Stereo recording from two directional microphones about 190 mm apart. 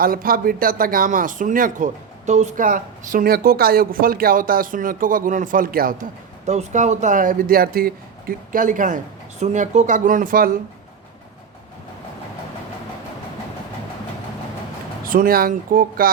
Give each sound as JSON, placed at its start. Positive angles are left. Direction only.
{"t": 0.0, "sound": "speech", "side_deg": -50}
{"t": 15.0, "sound": "speech", "side_deg": -50}